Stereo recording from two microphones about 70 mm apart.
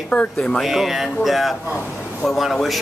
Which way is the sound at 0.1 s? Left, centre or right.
Centre.